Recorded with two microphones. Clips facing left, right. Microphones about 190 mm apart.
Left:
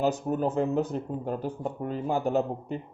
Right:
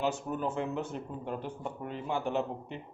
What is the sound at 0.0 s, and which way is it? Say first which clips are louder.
Speech: left 6 dB; 40° left (ahead or behind).